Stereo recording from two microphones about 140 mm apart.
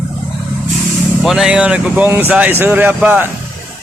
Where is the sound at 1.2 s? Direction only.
5° right (ahead or behind).